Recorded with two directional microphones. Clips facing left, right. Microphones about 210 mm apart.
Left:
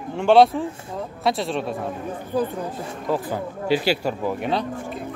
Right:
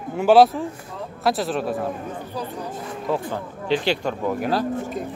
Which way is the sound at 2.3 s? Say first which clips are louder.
Left 9 dB; 50° left (ahead or behind).